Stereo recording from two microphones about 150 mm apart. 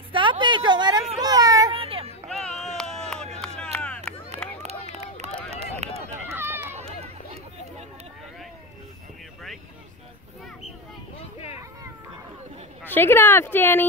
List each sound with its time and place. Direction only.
0.1 s a sound: 35° right (ahead or behind)
1.2 s child singing: 25° right (ahead or behind)
1.7 s children playing: 40° right (ahead or behind)
2.3 s a sound: centre (ahead or behind)
4.6 s run: 45° right (ahead or behind)
5.5 s a sound: 45° right (ahead or behind)
6.3 s run: 15° right (ahead or behind)
6.8 s run: 45° right (ahead or behind)
12.8 s speech: 15° left (ahead or behind)